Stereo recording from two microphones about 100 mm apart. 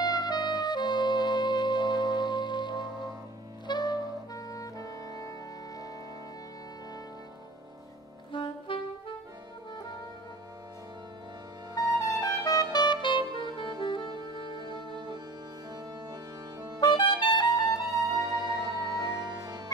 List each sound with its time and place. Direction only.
0.0 s music: 45° left (ahead or behind)
3.6 s saxophone: 45° left (ahead or behind)
8.3 s saxophone: 55° left (ahead or behind)
11.7 s saxophone: 30° left (ahead or behind); by 13.7 s 55° left (ahead or behind)
13.8 s music: 55° left (ahead or behind)
14.1 s music: 45° right (ahead or behind)
16.8 s clarinet: 55° left (ahead or behind)
18.1 s music: 45° right (ahead or behind)